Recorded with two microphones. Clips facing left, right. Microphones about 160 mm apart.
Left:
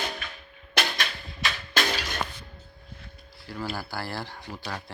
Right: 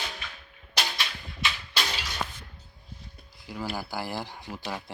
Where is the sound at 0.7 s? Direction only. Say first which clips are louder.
Left 3 dB; 55° left (ahead or behind).